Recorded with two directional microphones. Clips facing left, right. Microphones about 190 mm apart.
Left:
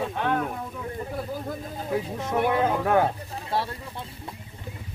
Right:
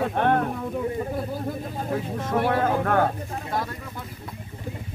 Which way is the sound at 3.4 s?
30° left (ahead or behind).